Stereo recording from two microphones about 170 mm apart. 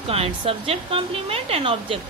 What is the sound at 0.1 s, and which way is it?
A woman's voice, 35° right (ahead or behind).